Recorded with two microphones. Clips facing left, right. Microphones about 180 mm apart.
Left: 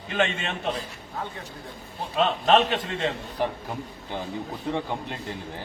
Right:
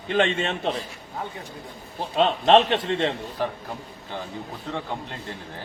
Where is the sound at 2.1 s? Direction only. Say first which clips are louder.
Right 3 dB; 30° right (ahead or behind).